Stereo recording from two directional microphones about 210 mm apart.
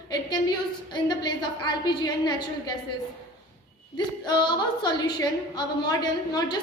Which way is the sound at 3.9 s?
20° left (ahead or behind).